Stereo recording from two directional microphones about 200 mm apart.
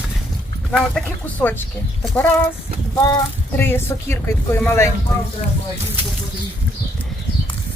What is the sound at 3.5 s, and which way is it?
Speech, 10° left (ahead or behind).